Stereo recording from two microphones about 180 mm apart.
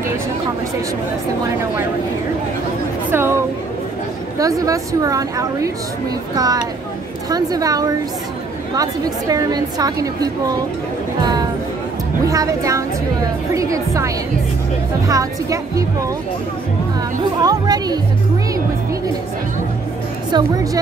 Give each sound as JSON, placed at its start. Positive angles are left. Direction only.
{"t": 3.1, "sound": "a woman's voice", "side_deg": -15}
{"t": 9.3, "sound": "a woman's voice", "side_deg": -20}
{"t": 12.3, "sound": "a woman's voice", "side_deg": -20}
{"t": 17.4, "sound": "a woman's voice", "side_deg": -20}
{"t": 20.2, "sound": "a woman's voice", "side_deg": -20}